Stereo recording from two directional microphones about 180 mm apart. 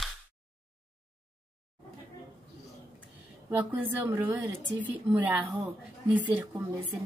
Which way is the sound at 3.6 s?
10° right (ahead or behind).